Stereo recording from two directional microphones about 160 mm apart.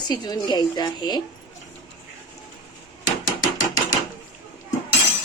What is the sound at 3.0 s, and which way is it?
Hammer, 25° left (ahead or behind).